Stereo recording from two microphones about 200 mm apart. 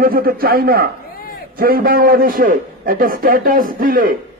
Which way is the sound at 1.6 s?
45° right (ahead or behind).